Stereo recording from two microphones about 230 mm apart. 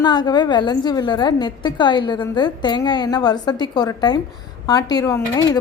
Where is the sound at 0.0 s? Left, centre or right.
Centre.